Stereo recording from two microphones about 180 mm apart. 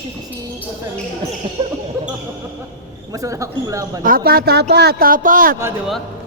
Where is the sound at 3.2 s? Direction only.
20° right (ahead or behind).